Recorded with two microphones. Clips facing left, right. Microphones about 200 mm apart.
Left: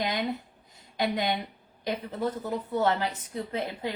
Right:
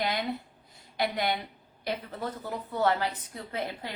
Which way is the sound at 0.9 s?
20° left (ahead or behind).